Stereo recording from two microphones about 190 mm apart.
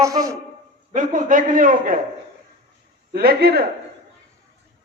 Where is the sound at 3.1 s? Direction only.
55° right (ahead or behind).